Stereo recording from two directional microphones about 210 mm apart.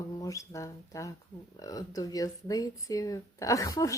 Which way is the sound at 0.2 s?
15° left (ahead or behind).